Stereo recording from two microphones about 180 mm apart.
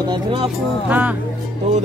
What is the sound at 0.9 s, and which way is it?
Speech, 10° right (ahead or behind).